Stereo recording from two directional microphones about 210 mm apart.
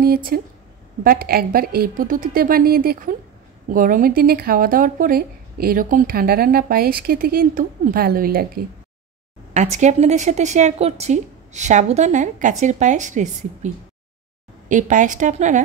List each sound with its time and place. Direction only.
0.0 s speech: 45° right (ahead or behind)
9.5 s speech: 35° right (ahead or behind)
14.7 s speech: 35° right (ahead or behind)